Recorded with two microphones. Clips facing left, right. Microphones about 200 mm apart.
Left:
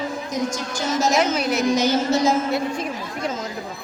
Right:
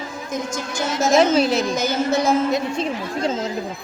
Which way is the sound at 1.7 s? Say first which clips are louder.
Left 1 dB; 50° right (ahead or behind).